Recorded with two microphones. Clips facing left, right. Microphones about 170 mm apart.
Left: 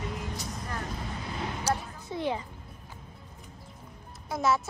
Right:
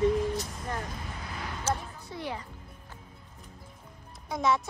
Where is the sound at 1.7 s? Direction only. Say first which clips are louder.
Even; 20° left (ahead or behind).